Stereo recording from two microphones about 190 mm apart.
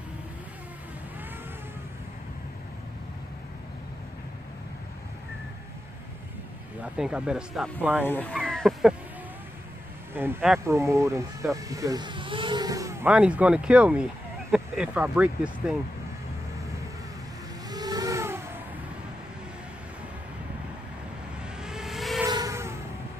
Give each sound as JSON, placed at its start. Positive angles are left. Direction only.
{"t": 6.8, "sound": "speech", "side_deg": -5}
{"t": 8.0, "sound": "a sound", "side_deg": 10}
{"t": 10.1, "sound": "speech", "side_deg": -10}
{"t": 17.6, "sound": "vehicle", "side_deg": -20}
{"t": 21.4, "sound": "vehicle", "side_deg": -5}
{"t": 22.2, "sound": "vehicle", "side_deg": -15}